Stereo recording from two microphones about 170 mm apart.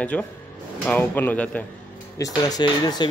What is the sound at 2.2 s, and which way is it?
Speech, 20° left (ahead or behind).